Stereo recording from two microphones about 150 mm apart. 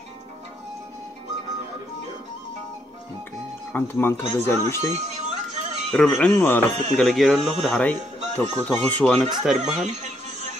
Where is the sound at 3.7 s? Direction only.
15° left (ahead or behind).